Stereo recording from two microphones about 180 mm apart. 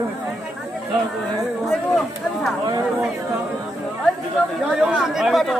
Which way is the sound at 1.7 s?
Centre (ahead or behind).